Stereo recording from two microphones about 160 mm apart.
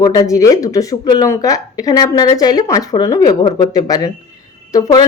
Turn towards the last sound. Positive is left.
turn(degrees=25)  # may be behind; listen again after turning